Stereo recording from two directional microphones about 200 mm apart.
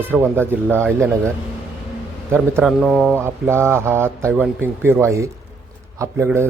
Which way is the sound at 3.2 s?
10° right (ahead or behind).